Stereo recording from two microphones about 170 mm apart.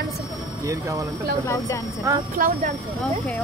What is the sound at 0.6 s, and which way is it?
Speech, 20° right (ahead or behind).